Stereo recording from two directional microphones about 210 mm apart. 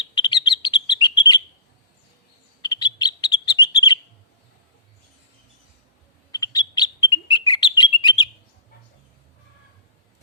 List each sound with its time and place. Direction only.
0.1 s bird: 20° left (ahead or behind)
2.6 s bird: 20° left (ahead or behind)
6.3 s bird: 20° left (ahead or behind)